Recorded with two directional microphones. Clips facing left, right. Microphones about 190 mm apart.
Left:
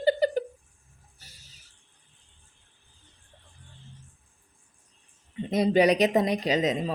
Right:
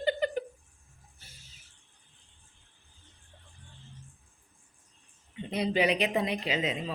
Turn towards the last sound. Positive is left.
turn(degrees=40)  # may be behind; listen again after turning